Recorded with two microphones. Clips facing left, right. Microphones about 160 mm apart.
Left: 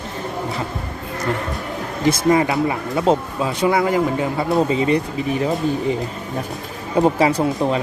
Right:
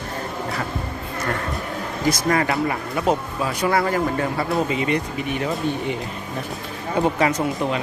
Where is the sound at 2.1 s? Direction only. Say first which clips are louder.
Left 4 dB; 25° left (ahead or behind).